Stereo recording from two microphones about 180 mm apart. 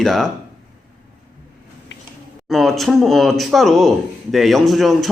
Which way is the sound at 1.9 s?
75° left (ahead or behind).